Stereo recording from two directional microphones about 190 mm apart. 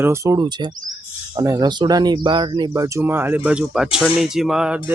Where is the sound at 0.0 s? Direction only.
15° right (ahead or behind).